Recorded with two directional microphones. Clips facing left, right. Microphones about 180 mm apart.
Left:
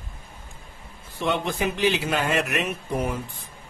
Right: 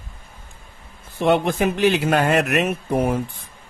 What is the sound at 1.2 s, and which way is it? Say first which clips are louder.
Speech: right 7 dB; 55° right (ahead or behind).